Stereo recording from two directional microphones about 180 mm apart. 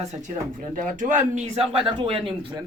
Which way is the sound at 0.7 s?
45° right (ahead or behind).